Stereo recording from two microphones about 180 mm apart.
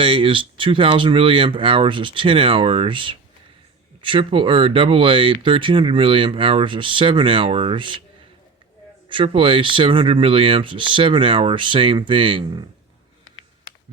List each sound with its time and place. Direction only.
0.0 s speech: 30° right (ahead or behind)
9.0 s speech: 30° right (ahead or behind)